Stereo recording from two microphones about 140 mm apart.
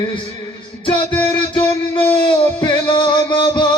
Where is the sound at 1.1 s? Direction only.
10° left (ahead or behind).